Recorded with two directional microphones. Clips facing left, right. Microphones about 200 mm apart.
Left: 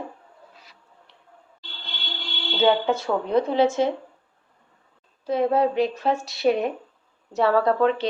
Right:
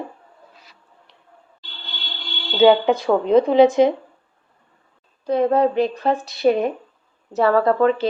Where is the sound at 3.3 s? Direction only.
20° right (ahead or behind).